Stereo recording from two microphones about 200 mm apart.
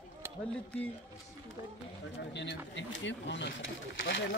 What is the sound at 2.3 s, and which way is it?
Speech, 60° left (ahead or behind).